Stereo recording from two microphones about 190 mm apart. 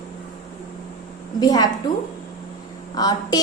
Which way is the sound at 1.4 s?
20° left (ahead or behind).